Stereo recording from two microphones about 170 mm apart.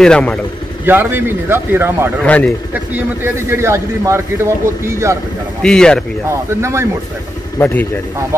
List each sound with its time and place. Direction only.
0.0 s speech: 5° left (ahead or behind)
0.8 s a man's voice: 10° right (ahead or behind)
2.2 s a man's voice: 10° left (ahead or behind)
3.4 s a man's voice: 15° right (ahead or behind)
5.6 s speech: 5° left (ahead or behind)
6.6 s a man's voice: 15° right (ahead or behind)
7.5 s a man's voice: 10° left (ahead or behind)